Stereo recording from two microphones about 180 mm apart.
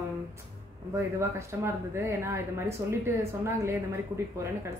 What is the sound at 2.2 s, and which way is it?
Speech, 15° right (ahead or behind).